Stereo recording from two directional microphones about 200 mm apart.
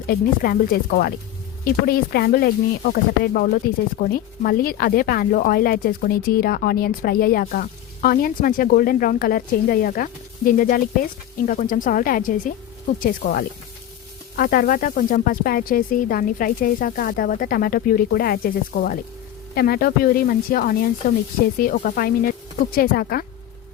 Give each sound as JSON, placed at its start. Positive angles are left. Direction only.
{"t": 0.1, "sound": "speech", "side_deg": 45}